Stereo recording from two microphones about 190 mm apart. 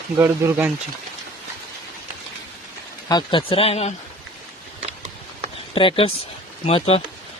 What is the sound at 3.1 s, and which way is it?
Speech, 25° left (ahead or behind).